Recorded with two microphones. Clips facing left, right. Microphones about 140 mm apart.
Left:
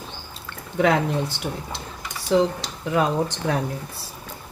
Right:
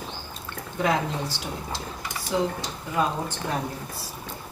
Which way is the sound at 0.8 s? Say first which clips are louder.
Left 5 dB; 60° left (ahead or behind).